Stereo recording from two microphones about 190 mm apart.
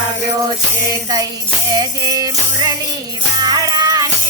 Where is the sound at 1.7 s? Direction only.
20° right (ahead or behind).